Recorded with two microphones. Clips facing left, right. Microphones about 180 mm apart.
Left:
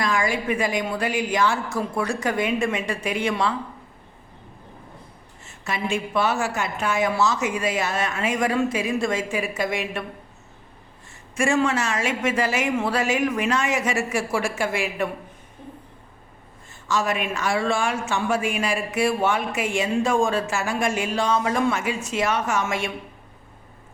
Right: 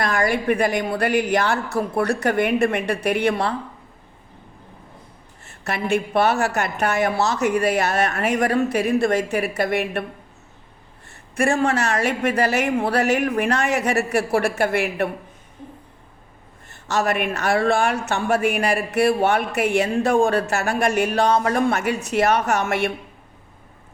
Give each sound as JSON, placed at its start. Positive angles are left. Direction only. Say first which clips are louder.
{"t": 0.3, "sound": "a man's voice", "louder": "right 4 dB", "side_deg": -65}
{"t": 5.5, "sound": "a man's voice", "louder": "right 4 dB", "side_deg": -65}
{"t": 11.1, "sound": "a man's voice", "louder": "right 1 dB", "side_deg": -60}
{"t": 16.6, "sound": "a man's voice", "louder": "right 2 dB", "side_deg": -65}